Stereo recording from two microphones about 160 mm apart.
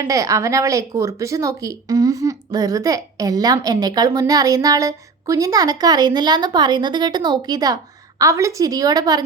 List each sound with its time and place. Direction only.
0.0 s a woman's voice: 20° right (ahead or behind)